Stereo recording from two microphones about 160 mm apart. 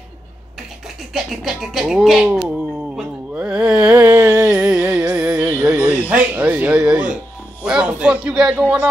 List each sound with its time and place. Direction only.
1.1 s speech: centre (ahead or behind)
3.0 s a sound: 5° right (ahead or behind)
4.3 s music: 25° right (ahead or behind)
4.6 s music: 10° right (ahead or behind)
7.6 s speech: 5° right (ahead or behind)